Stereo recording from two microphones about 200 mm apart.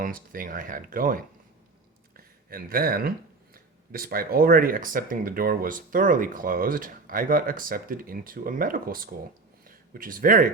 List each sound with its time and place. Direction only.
0.0 s speech: 45° right (ahead or behind)
2.1 s a sound: 45° right (ahead or behind)
3.5 s speech: 45° right (ahead or behind)